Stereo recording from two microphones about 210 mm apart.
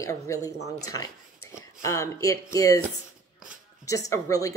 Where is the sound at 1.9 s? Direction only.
15° left (ahead or behind).